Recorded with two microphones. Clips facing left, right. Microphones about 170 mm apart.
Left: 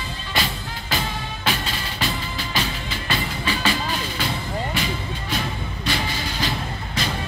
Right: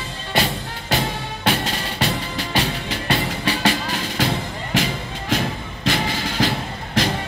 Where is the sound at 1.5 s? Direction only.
70° right (ahead or behind).